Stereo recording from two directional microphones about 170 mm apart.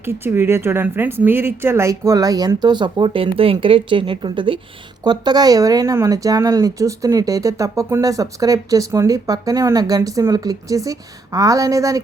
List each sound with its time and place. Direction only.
0.0 s speech: 15° right (ahead or behind)